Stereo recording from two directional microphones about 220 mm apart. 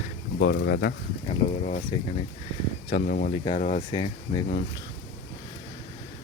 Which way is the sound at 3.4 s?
25° left (ahead or behind).